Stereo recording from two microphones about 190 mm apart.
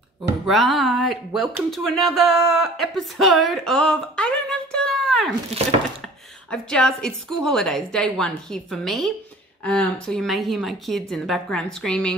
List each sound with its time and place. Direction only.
0.5 s a woman's voice: centre (ahead or behind)
6.5 s a woman's voice: 5° left (ahead or behind)